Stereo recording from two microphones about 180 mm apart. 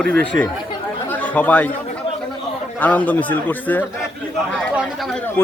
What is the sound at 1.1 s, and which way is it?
Chatter, 10° left (ahead or behind).